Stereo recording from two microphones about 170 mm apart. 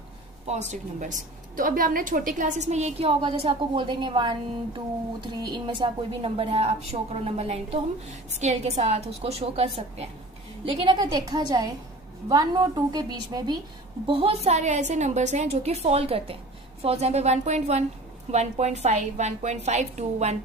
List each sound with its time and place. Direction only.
0.5 s a woman's voice: 40° right (ahead or behind)